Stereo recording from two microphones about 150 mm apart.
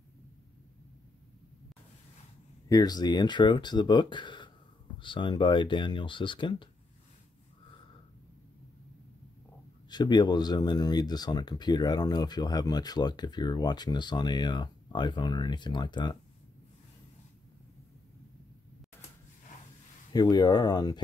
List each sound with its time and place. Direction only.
2.7 s speech: 25° left (ahead or behind)
9.8 s speech: 30° left (ahead or behind)
20.1 s speech: 25° left (ahead or behind)